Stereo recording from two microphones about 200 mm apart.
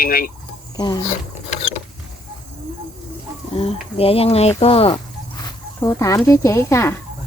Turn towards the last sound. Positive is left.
turn(degrees=15)  # may be behind; listen again after turning